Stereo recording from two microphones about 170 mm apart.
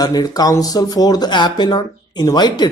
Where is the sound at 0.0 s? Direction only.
25° left (ahead or behind).